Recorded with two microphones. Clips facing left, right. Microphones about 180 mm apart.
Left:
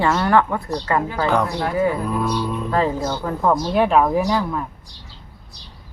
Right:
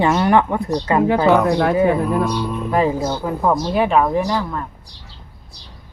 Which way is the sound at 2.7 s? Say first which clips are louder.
Right 3 dB; 15° right (ahead or behind).